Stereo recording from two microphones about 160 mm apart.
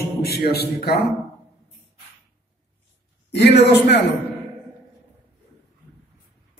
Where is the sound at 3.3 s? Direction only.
90° left.